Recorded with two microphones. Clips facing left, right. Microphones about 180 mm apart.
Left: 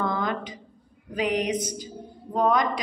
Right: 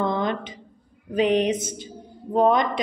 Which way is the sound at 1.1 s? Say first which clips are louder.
Right 5 dB; 25° right (ahead or behind).